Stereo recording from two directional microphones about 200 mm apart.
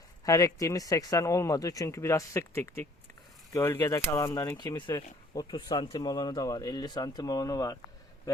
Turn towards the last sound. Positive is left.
turn(degrees=20)  # may be behind; listen again after turning